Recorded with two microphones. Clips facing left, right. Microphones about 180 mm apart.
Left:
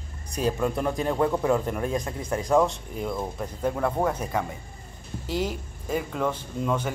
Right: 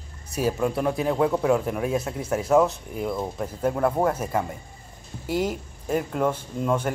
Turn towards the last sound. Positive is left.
turn(degrees=-10)  # may be behind; listen again after turning